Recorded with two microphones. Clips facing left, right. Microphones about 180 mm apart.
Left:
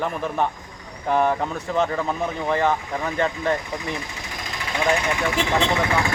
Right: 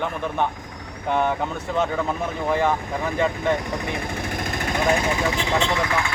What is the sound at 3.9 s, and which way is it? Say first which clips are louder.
Jackhammer: right 5 dB; 55° right (ahead or behind).